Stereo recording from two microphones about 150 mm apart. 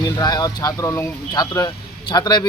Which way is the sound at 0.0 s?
25° left (ahead or behind).